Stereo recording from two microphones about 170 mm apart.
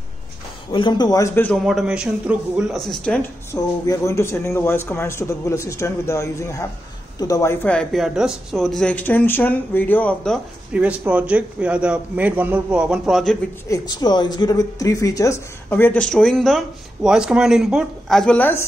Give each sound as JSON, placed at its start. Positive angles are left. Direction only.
{"t": 0.7, "sound": "a man's voice", "side_deg": 25}
{"t": 1.6, "sound": "a man's voice", "side_deg": 0}
{"t": 3.8, "sound": "a man's voice", "side_deg": 20}
{"t": 7.6, "sound": "speech", "side_deg": 5}
{"t": 10.7, "sound": "a man's voice", "side_deg": -10}
{"t": 13.7, "sound": "speech", "side_deg": 25}